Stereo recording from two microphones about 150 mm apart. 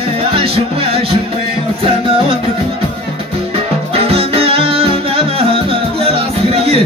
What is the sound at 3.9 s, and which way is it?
Music, 40° right (ahead or behind).